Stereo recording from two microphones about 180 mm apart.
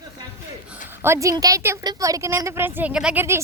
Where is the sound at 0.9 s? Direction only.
15° right (ahead or behind).